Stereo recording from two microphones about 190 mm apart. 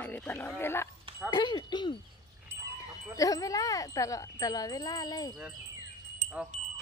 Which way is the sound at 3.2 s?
20° left (ahead or behind).